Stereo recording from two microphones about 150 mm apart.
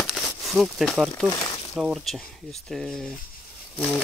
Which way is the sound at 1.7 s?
5° right (ahead or behind).